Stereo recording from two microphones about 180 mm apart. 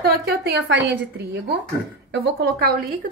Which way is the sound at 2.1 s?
60° right (ahead or behind).